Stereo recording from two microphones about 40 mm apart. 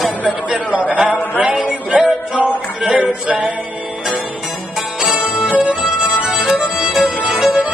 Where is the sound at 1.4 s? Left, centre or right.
Right.